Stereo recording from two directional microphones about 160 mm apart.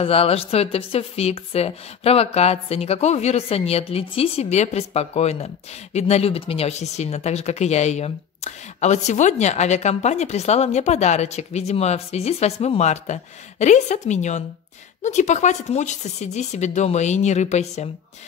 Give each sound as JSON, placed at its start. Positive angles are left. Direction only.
{"t": 0.0, "sound": "a woman's voice", "side_deg": 35}